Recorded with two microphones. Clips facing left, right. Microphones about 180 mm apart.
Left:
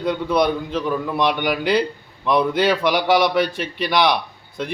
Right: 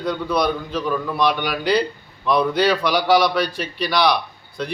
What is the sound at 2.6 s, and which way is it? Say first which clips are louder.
A man's voice: even; 20° left (ahead or behind).